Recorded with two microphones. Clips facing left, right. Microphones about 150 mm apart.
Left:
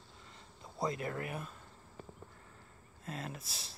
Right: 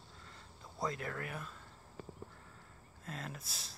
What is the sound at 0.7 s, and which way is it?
Speech, 15° left (ahead or behind).